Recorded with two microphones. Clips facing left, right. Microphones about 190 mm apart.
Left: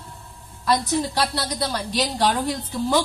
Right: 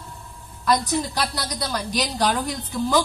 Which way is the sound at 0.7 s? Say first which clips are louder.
Even; 25° left (ahead or behind).